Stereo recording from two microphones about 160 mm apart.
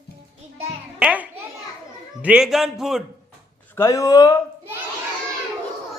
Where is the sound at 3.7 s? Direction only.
15° left (ahead or behind).